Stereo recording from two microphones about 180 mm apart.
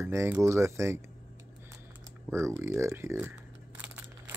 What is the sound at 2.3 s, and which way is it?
Speech, 15° right (ahead or behind).